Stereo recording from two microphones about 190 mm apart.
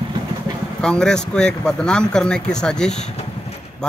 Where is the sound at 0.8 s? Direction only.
5° left (ahead or behind).